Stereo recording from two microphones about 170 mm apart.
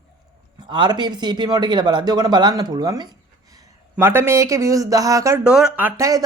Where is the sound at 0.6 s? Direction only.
25° right (ahead or behind).